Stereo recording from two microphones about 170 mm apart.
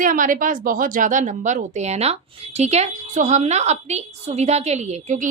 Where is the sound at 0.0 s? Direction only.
50° right (ahead or behind).